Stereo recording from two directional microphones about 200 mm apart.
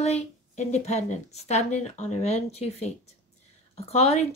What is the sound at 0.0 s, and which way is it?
A woman's voice, 35° left (ahead or behind).